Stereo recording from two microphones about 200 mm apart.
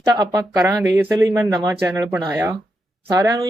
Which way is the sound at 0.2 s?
20° right (ahead or behind).